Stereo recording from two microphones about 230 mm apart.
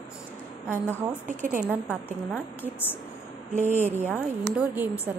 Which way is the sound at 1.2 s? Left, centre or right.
Right.